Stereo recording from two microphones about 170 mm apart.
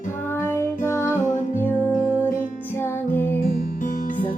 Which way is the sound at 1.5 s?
15° left (ahead or behind).